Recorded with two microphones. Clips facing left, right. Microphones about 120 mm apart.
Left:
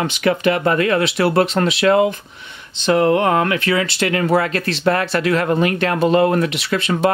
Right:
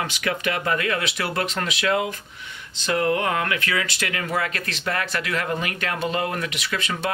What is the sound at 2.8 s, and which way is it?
Speech, 25° left (ahead or behind).